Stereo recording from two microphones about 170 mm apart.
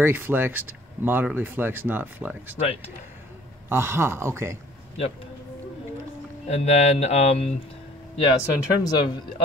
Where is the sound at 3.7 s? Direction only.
15° right (ahead or behind).